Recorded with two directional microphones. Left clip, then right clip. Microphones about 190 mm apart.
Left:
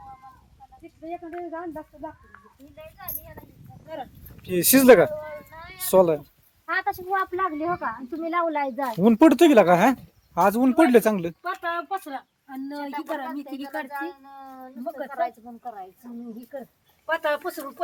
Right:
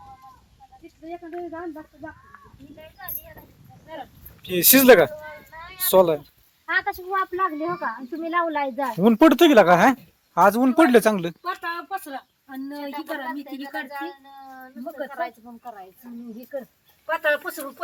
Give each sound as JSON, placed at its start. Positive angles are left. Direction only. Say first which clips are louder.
{"t": 1.5, "sound": "speech", "louder": "even", "side_deg": 20}
{"t": 4.4, "sound": "speech", "louder": "right 1 dB", "side_deg": 0}
{"t": 6.7, "sound": "speech", "louder": "right 2 dB", "side_deg": 10}
{"t": 7.1, "sound": "speech", "louder": "right 3 dB", "side_deg": -5}
{"t": 11.9, "sound": "a woman's voice", "louder": "left 1 dB", "side_deg": -15}
{"t": 12.7, "sound": "speech", "louder": "left 1 dB", "side_deg": 5}
{"t": 14.8, "sound": "a woman's voice", "louder": "even", "side_deg": -15}
{"t": 15.1, "sound": "speech", "louder": "left 2 dB", "side_deg": 0}
{"t": 16.5, "sound": "a woman's voice", "louder": "right 7 dB", "side_deg": -15}